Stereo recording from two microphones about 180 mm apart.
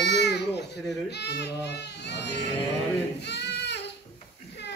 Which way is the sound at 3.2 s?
70° left (ahead or behind).